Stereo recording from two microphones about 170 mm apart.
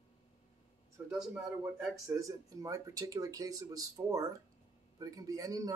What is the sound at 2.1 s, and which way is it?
Speech, 20° right (ahead or behind).